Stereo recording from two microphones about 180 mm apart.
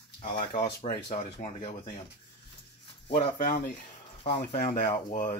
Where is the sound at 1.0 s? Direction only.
40° left (ahead or behind).